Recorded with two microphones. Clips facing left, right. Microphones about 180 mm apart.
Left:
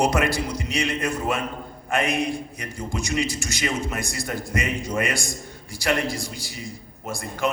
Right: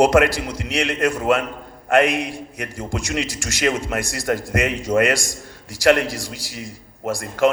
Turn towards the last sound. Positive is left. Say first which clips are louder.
# right 8 dB
turn(degrees=-85)